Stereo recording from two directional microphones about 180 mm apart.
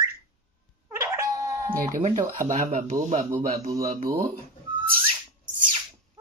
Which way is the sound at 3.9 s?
50° right (ahead or behind).